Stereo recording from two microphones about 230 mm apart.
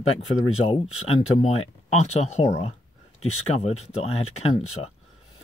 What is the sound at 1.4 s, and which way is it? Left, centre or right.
Speech, left.